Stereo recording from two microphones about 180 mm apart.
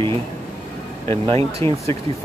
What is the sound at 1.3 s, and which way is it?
Speech, 15° left (ahead or behind).